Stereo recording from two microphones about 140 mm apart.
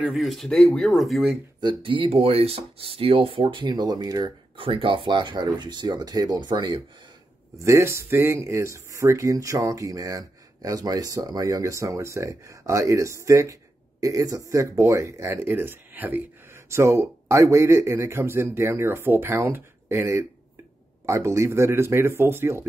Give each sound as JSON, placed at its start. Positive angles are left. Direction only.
{"t": 0.0, "sound": "speech", "side_deg": 0}
{"t": 1.6, "sound": "speech", "side_deg": -35}
{"t": 7.5, "sound": "speech", "side_deg": -20}